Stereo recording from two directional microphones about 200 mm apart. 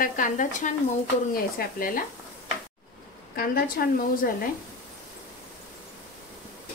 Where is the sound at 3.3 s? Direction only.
50° left (ahead or behind).